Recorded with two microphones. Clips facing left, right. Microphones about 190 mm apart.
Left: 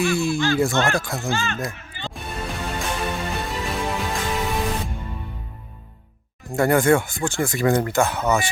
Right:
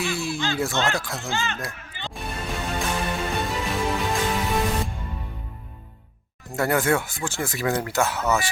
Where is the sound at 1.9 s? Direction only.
20° right (ahead or behind).